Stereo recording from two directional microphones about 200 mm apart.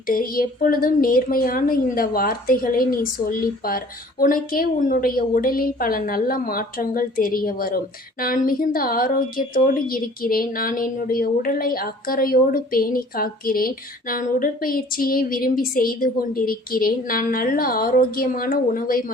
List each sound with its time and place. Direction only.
0.1 s a woman's voice: 45° left (ahead or behind)